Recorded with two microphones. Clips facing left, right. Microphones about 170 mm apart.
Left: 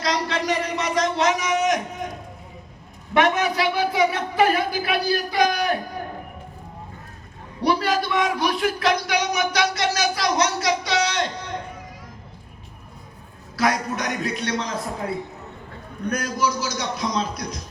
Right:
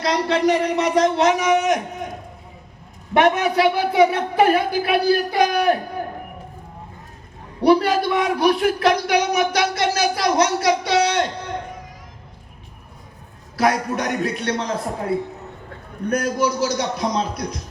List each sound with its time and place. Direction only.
0.0 s speech: 60° right (ahead or behind)
3.2 s speech: 60° right (ahead or behind)
7.6 s speech: 55° right (ahead or behind)
13.6 s speech: 55° right (ahead or behind)